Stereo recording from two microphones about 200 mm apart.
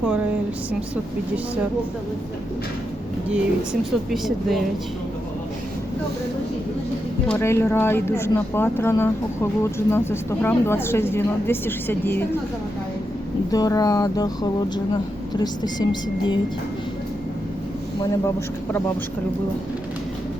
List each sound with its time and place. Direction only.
0.0 s a sound: 5° right (ahead or behind)
3.2 s speech: 5° right (ahead or behind)
7.3 s speech: 10° left (ahead or behind)
13.5 s speech: 20° left (ahead or behind)
15.6 s speech: 20° left (ahead or behind)
18.0 s speech: 15° left (ahead or behind)